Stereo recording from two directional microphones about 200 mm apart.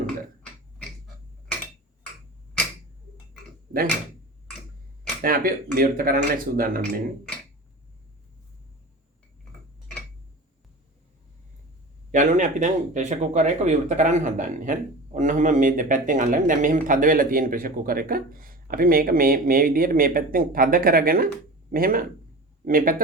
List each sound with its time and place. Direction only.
5.2 s speech: 45° right (ahead or behind)
12.1 s speech: 40° right (ahead or behind)